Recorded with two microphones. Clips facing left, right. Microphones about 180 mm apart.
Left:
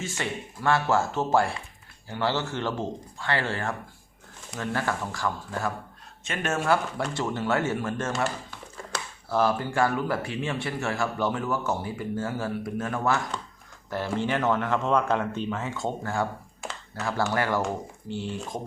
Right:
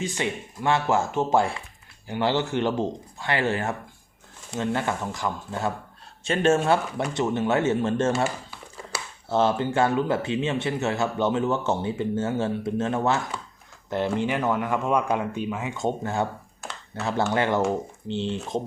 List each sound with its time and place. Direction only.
0.0 s speech: 15° right (ahead or behind)
8.1 s a sound: 10° right (ahead or behind)
9.3 s speech: 25° right (ahead or behind)